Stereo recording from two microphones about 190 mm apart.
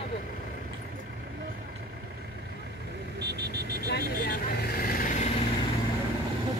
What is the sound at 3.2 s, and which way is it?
Vehicle, 60° right (ahead or behind).